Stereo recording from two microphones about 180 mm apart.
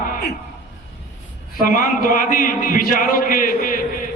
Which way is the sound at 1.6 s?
50° left (ahead or behind).